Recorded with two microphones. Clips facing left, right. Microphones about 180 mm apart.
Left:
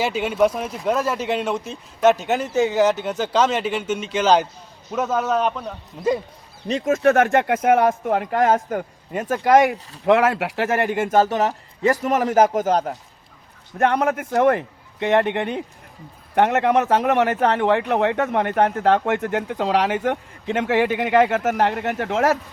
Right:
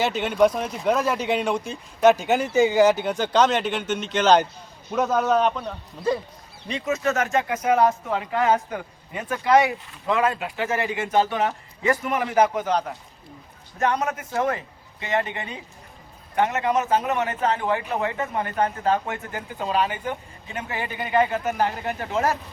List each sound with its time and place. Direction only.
0.0 s speech: 5° left (ahead or behind)
6.7 s speech: 45° left (ahead or behind)
10.1 s speech: 75° left (ahead or behind); by 13.0 s 45° left (ahead or behind)
13.7 s a man's voice: 60° left (ahead or behind); by 22.4 s 85° left